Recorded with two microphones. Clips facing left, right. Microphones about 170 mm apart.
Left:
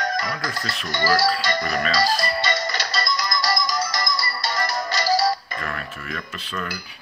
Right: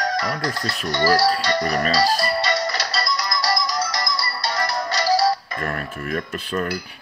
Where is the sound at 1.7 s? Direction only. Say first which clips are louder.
Right 2 dB; centre (ahead or behind).